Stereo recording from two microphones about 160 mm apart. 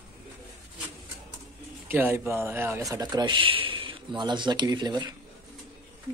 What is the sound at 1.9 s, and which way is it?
Speech, 15° right (ahead or behind).